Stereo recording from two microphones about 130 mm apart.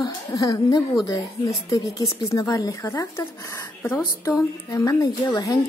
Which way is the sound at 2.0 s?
25° left (ahead or behind).